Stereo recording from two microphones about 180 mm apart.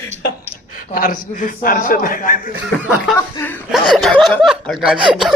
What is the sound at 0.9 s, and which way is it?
A man's voice, 50° left (ahead or behind).